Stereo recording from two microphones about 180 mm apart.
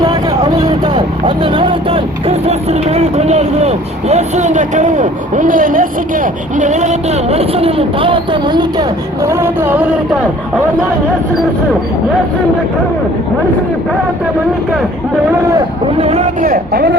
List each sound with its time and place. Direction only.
0.0 s speech: 20° right (ahead or behind)
15.5 s speech: 35° right (ahead or behind)
16.5 s speech: 65° right (ahead or behind)